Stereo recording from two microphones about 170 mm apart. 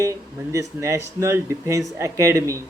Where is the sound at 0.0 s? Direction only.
20° right (ahead or behind).